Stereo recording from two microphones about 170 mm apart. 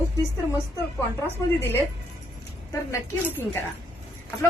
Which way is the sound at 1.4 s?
15° left (ahead or behind).